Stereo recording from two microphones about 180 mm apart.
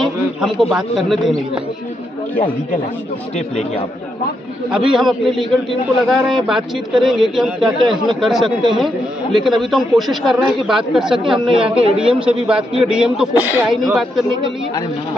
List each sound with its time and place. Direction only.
0.0 s a man's voice: centre (ahead or behind)
4.8 s a man's voice: centre (ahead or behind)